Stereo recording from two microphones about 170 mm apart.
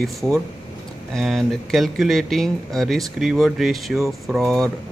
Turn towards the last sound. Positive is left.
turn(degrees=0)  # may be behind; listen again after turning